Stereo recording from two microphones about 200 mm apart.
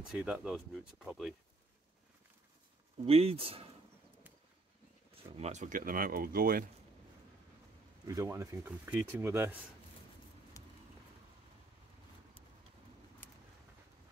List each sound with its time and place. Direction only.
0.0 s speech: 5° right (ahead or behind)
3.1 s speech: 30° right (ahead or behind)
5.4 s speech: 35° right (ahead or behind)
8.1 s speech: 15° right (ahead or behind)
10.6 s a sound: 15° left (ahead or behind)